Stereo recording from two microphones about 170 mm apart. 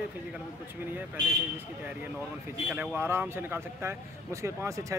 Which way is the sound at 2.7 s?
10° right (ahead or behind).